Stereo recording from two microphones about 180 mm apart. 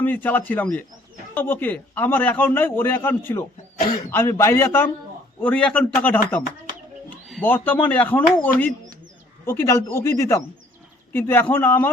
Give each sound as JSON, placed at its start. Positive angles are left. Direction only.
{"t": 0.0, "sound": "a man's voice", "side_deg": 10}
{"t": 7.4, "sound": "a man's voice", "side_deg": 10}
{"t": 9.5, "sound": "a man's voice", "side_deg": 15}